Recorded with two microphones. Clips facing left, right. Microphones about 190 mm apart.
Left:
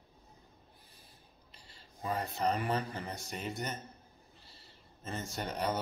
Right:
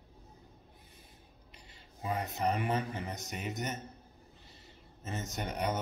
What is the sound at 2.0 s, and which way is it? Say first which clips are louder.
Speech: even; 10° right (ahead or behind).